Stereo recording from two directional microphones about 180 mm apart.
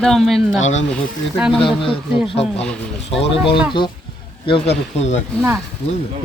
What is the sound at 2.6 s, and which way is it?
Speech, 5° left (ahead or behind).